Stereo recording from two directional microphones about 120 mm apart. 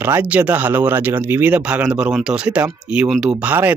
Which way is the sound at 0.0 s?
15° right (ahead or behind).